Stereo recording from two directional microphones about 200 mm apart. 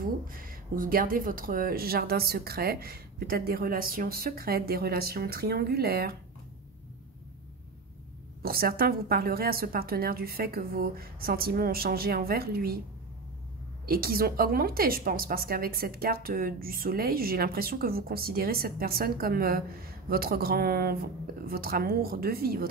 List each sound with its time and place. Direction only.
0.0 s a woman's voice: 45° right (ahead or behind)
8.4 s a woman's voice: 50° right (ahead or behind)
13.8 s a woman's voice: 50° right (ahead or behind)